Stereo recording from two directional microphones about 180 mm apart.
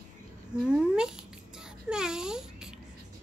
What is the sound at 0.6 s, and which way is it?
Cat, 5° right (ahead or behind).